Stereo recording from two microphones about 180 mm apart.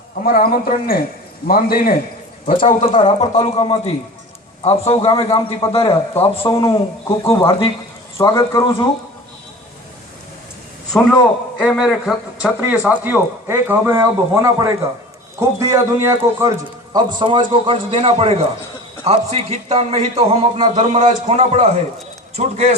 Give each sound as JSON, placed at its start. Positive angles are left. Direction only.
{"t": 0.3, "sound": "a man's voice", "side_deg": 55}
{"t": 6.4, "sound": "a man's voice", "side_deg": 20}
{"t": 10.9, "sound": "a man's voice", "side_deg": 5}